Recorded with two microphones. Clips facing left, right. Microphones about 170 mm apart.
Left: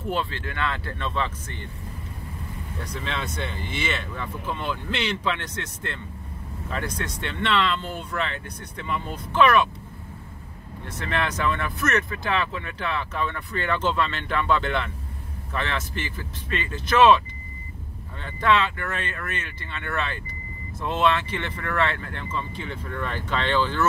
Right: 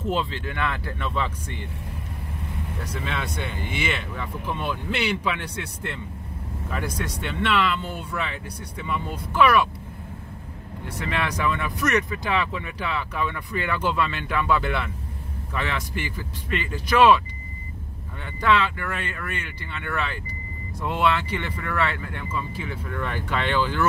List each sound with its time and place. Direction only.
0.0 s speech: 20° right (ahead or behind)
2.8 s speech: 5° right (ahead or behind)
10.9 s speech: 10° right (ahead or behind)
18.2 s speech: 10° right (ahead or behind)